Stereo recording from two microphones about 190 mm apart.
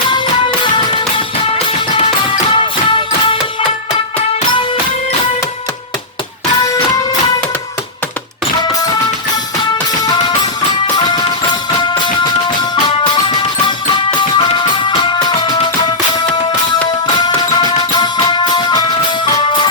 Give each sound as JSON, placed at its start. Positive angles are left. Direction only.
{"t": 10.0, "sound": "music", "side_deg": 20}
{"t": 13.7, "sound": "music", "side_deg": 25}
{"t": 17.2, "sound": "music", "side_deg": 20}